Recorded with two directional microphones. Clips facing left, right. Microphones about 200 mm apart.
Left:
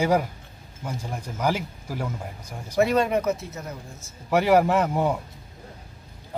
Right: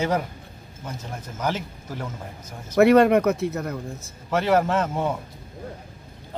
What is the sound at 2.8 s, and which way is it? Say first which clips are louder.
Speech: right 6 dB; 65° right (ahead or behind).